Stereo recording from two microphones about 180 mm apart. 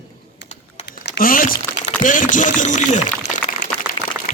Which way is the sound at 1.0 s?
60° left (ahead or behind).